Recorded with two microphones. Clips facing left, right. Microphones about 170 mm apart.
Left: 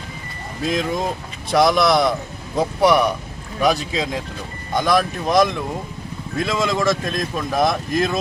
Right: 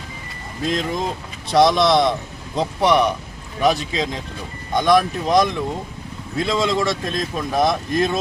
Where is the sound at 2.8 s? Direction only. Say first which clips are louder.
Left 1 dB; centre (ahead or behind).